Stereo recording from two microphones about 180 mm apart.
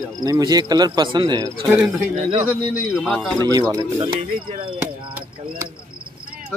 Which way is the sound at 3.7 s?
20° right (ahead or behind).